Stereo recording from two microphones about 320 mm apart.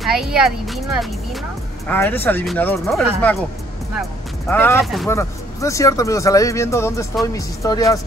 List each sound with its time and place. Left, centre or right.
0.0 s speech: centre
1.9 s speech: centre
4.5 s speech: centre